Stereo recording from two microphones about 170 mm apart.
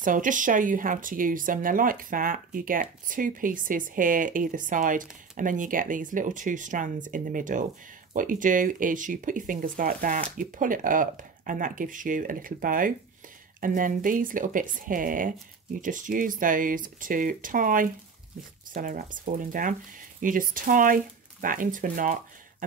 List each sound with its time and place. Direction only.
0.0 s speech: 50° right (ahead or behind)